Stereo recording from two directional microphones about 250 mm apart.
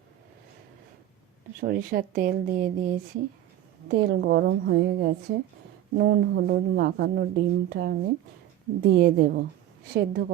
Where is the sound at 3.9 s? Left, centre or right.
Right.